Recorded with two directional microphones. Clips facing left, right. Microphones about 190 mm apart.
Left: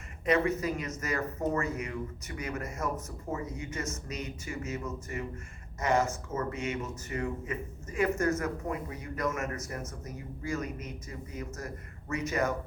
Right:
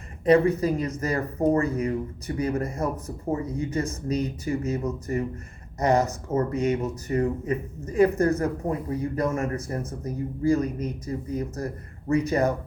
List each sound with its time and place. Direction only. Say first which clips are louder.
0.3 s speech: right 8 dB; 35° right (ahead or behind)